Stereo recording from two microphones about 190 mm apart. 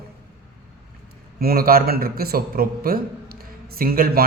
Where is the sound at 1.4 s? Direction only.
50° right (ahead or behind).